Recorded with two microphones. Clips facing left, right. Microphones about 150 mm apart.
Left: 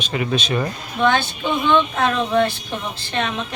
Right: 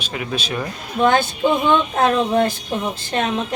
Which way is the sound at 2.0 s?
40° right (ahead or behind).